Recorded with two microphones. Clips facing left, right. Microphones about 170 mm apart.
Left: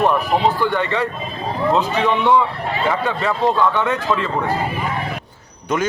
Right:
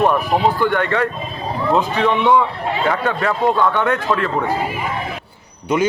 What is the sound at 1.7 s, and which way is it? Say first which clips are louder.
Speech: right 2 dB; 10° right (ahead or behind).